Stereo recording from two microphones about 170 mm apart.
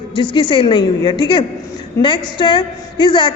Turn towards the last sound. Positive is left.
turn(degrees=25)  # may be behind; listen again after turning